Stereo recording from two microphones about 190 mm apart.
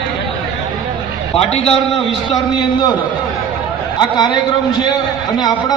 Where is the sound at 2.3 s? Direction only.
20° left (ahead or behind).